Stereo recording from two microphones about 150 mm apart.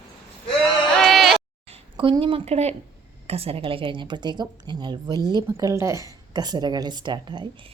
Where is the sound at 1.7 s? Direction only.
35° right (ahead or behind).